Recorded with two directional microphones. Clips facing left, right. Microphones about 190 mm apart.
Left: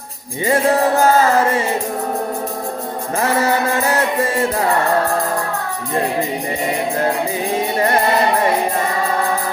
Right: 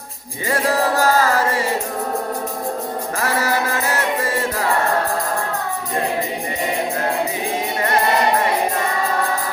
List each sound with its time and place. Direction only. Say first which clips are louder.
0.4 s music: left 4 dB; 25° left (ahead or behind)
3.2 s music: left 5 dB; 25° left (ahead or behind)